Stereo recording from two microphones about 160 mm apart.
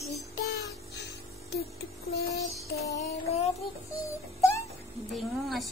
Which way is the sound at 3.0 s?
40° left (ahead or behind).